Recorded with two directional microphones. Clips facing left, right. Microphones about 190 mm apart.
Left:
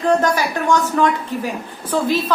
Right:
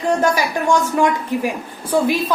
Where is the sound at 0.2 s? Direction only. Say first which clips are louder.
Right 1 dB; 10° right (ahead or behind).